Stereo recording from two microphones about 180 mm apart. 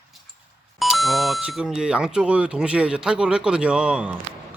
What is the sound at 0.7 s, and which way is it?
Speech, centre (ahead or behind).